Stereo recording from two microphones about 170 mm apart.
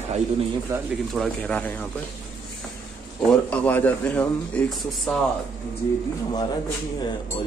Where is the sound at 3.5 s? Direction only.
10° left (ahead or behind).